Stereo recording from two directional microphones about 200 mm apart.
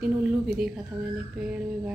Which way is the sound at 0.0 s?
5° right (ahead or behind).